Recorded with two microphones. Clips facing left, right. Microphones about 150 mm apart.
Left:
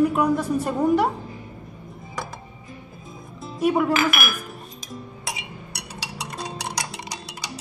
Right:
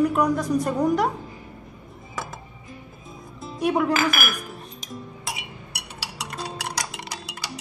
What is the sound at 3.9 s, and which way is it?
Dishes, 40° right (ahead or behind).